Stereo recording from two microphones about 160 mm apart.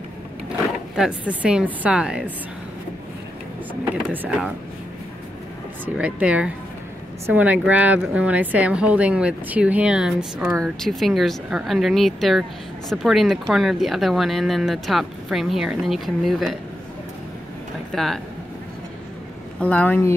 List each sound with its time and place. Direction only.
0.9 s speech: 5° right (ahead or behind)
3.9 s speech: 10° right (ahead or behind)
5.9 s speech: 10° right (ahead or behind)
17.9 s speech: centre (ahead or behind)
19.6 s speech: 10° left (ahead or behind)